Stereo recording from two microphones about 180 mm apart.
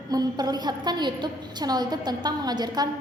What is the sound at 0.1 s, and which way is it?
A woman's voice, 20° right (ahead or behind).